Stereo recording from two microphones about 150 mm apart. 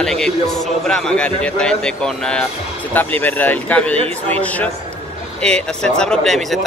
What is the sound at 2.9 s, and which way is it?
Speech, 10° left (ahead or behind).